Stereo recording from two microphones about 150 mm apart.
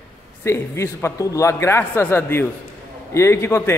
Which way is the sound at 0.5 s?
20° left (ahead or behind).